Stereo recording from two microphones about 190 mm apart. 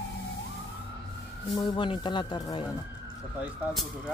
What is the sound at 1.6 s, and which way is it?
Speech, 25° left (ahead or behind).